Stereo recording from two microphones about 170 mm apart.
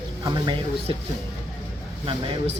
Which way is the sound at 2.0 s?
30° right (ahead or behind).